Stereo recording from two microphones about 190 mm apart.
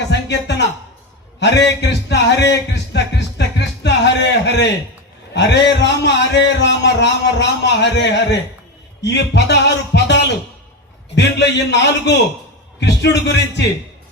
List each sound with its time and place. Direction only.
0.1 s music: 65° left (ahead or behind)
1.4 s a man's voice: 65° left (ahead or behind)